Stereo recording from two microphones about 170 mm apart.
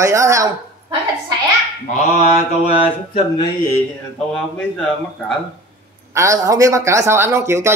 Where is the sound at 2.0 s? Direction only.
40° left (ahead or behind).